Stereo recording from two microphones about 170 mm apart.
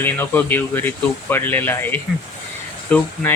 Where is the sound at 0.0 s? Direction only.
10° left (ahead or behind).